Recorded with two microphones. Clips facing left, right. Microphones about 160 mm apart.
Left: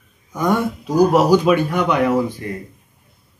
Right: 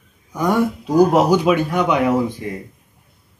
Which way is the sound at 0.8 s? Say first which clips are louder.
Even; 25° right (ahead or behind).